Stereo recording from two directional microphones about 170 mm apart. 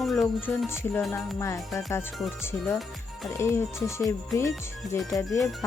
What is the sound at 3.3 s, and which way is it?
Speech, 15° left (ahead or behind).